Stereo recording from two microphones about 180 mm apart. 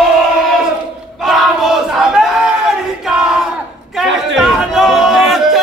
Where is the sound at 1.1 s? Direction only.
Centre (ahead or behind).